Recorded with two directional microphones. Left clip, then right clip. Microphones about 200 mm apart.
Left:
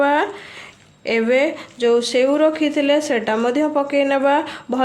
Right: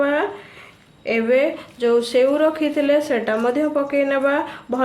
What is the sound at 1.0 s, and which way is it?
Speech, 35° left (ahead or behind).